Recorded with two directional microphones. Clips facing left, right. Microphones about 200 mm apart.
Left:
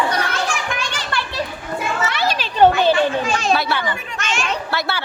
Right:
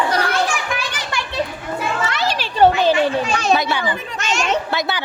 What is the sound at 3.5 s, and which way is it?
Speech, 15° right (ahead or behind).